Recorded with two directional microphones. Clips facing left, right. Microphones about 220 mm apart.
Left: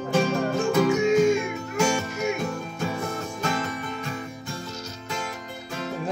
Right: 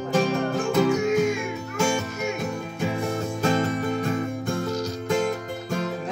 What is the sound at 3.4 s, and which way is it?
Music, 30° right (ahead or behind).